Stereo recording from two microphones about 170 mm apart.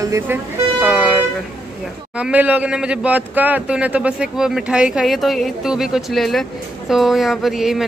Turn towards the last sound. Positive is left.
turn(degrees=0)  # may be behind; listen again after turning